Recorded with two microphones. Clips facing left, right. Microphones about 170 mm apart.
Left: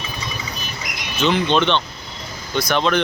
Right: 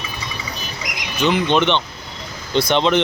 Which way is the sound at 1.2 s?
15° right (ahead or behind).